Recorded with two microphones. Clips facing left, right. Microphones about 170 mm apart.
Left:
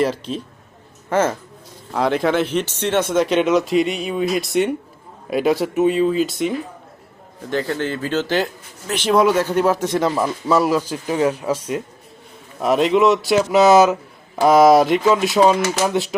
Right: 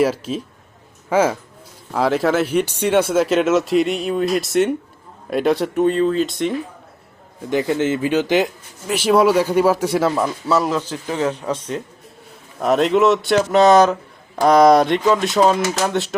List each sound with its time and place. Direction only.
0.0 s speech: 5° right (ahead or behind)
7.5 s speech: 15° right (ahead or behind); by 16.1 s centre (ahead or behind)